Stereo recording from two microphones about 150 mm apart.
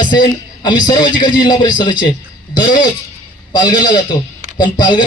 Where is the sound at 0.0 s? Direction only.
30° left (ahead or behind).